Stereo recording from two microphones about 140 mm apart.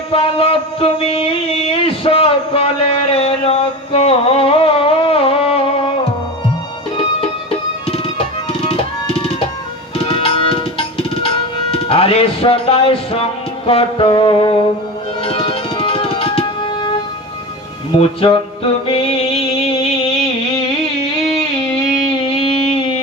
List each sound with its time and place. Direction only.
0.1 s a sound: 45° left (ahead or behind)
7.9 s tabla: 40° left (ahead or behind)
13.7 s music: 40° left (ahead or behind)
17.9 s music: 40° left (ahead or behind)
22.0 s music: 40° left (ahead or behind)